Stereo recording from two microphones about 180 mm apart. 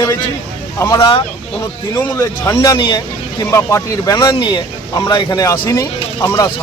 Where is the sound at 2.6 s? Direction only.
25° left (ahead or behind).